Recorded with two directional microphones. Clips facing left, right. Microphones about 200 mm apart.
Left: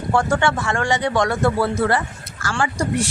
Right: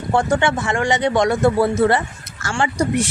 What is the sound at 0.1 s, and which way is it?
A woman's voice, 20° right (ahead or behind).